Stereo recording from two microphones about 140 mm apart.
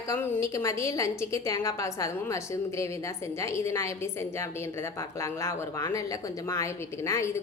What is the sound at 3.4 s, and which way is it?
A woman's voice, 20° left (ahead or behind).